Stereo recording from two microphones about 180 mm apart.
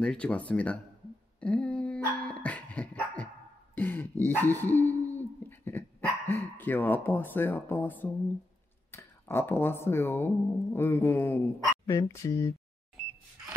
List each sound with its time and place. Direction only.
0.0 s speech: 5° left (ahead or behind)
1.4 s dog: 5° left (ahead or behind)
8.9 s speech: 10° left (ahead or behind)